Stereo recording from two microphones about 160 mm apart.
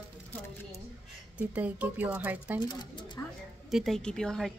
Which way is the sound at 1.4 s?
10° right (ahead or behind).